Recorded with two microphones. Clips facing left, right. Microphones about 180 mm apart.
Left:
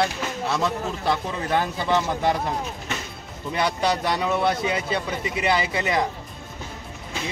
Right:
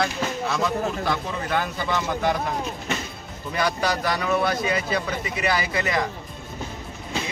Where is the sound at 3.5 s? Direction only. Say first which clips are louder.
Left 1 dB; 25° left (ahead or behind).